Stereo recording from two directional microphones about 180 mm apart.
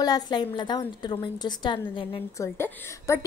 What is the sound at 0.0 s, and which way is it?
A woman's voice, 20° left (ahead or behind).